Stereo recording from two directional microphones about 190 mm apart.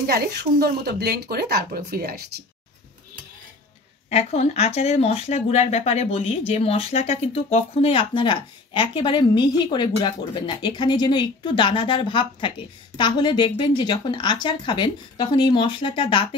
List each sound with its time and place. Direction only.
0.0 s speech: 55° right (ahead or behind)
4.1 s speech: 35° left (ahead or behind)